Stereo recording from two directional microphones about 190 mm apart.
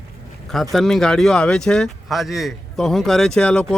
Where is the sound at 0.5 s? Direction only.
Centre (ahead or behind).